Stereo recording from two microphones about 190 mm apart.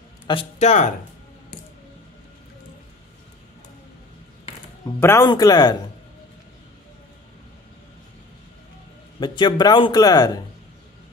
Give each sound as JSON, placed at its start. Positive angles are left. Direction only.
{"t": 0.3, "sound": "speech", "side_deg": 30}
{"t": 4.8, "sound": "a man's voice", "side_deg": 15}
{"t": 9.2, "sound": "a man's voice", "side_deg": 25}